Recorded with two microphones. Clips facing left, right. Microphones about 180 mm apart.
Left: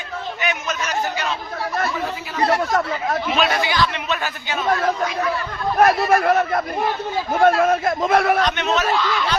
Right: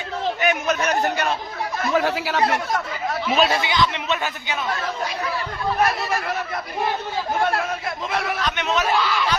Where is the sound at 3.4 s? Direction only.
25° right (ahead or behind).